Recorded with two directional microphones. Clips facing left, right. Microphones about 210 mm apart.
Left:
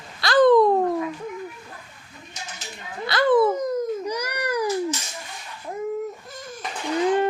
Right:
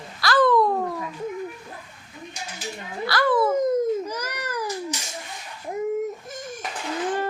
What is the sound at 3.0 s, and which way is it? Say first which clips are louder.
Speech: left 3 dB; 20° left (ahead or behind).